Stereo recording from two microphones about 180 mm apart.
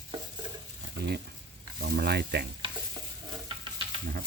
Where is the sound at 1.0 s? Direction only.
65° right (ahead or behind).